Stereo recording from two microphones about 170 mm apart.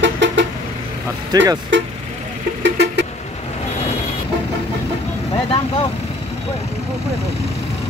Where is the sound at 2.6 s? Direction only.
90° right.